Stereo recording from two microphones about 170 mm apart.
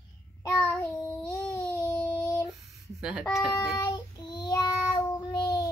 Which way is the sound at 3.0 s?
5° right (ahead or behind).